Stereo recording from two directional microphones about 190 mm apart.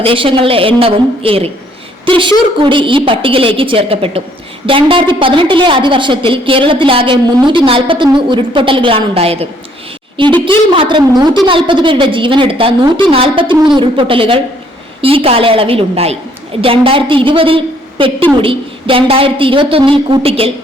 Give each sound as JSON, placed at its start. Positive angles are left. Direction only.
{"t": 0.0, "sound": "a woman's voice", "side_deg": -30}